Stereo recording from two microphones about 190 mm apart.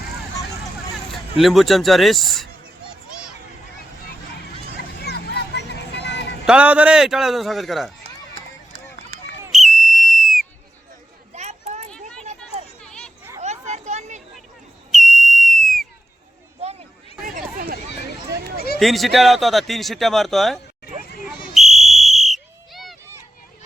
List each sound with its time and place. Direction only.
1.1 s speech: centre (ahead or behind)
4.8 s vehicle: 60° left (ahead or behind)
6.4 s speech: 5° right (ahead or behind)
9.5 s whistle: centre (ahead or behind)
11.3 s a sound: 35° right (ahead or behind)
12.8 s children playing: 5° left (ahead or behind)
13.4 s a sound: 35° right (ahead or behind)
14.9 s whistle: centre (ahead or behind)
16.6 s a sound: 35° right (ahead or behind)
17.2 s chatter: 45° right (ahead or behind)
18.5 s a sound: 55° left (ahead or behind)
18.8 s speech: centre (ahead or behind)
21.5 s whistle: centre (ahead or behind)